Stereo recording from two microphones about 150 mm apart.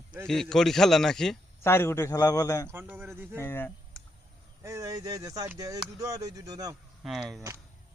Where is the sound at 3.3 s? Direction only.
15° left (ahead or behind).